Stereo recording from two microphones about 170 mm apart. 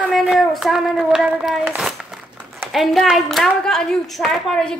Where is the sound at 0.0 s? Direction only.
Centre (ahead or behind).